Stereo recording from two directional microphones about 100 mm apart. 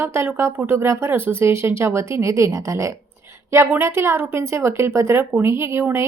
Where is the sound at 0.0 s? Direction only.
25° right (ahead or behind).